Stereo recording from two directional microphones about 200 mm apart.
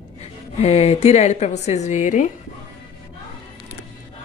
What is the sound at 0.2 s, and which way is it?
Speech, 30° left (ahead or behind).